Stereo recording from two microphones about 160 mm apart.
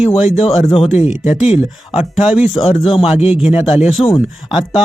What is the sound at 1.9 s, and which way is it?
Speech, 40° left (ahead or behind).